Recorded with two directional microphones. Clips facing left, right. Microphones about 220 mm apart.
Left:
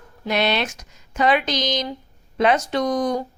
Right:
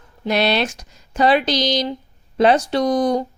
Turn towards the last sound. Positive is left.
turn(degrees=-30)  # may be behind; listen again after turning